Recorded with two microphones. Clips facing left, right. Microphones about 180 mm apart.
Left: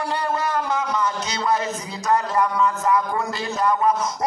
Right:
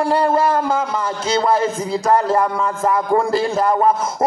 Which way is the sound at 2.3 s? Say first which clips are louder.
Right 2 dB; 35° right (ahead or behind).